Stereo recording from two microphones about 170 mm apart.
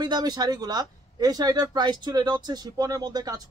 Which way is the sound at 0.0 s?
25° right (ahead or behind).